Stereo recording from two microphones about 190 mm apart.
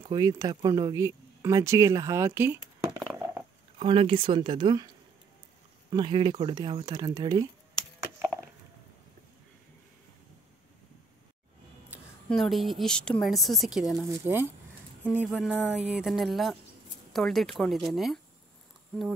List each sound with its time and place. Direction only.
0.0 s speech: 25° right (ahead or behind)
3.0 s a sound: 5° right (ahead or behind)
3.8 s speech: 30° right (ahead or behind)
12.3 s a woman's voice: centre (ahead or behind)